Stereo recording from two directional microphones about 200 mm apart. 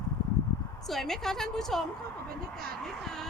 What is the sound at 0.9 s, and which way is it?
Speech, centre (ahead or behind).